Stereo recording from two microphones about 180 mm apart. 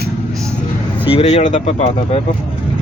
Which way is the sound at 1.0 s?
35° left (ahead or behind).